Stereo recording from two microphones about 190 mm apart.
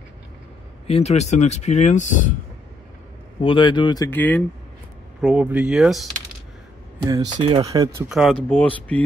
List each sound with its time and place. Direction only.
0.8 s speech: 35° left (ahead or behind)
3.3 s speech: 25° left (ahead or behind)
5.2 s speech: 5° right (ahead or behind)
7.1 s speech: 20° right (ahead or behind)
8.1 s speech: centre (ahead or behind)